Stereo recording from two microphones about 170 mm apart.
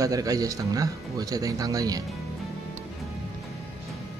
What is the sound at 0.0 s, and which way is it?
Speech, 20° right (ahead or behind).